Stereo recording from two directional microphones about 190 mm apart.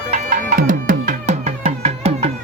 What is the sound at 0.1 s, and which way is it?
Music, 50° right (ahead or behind).